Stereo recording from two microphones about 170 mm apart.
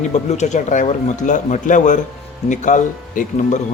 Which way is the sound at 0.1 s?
40° left (ahead or behind).